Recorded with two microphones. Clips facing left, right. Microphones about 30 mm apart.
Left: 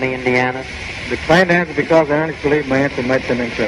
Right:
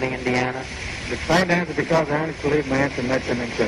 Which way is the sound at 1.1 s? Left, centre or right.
Left.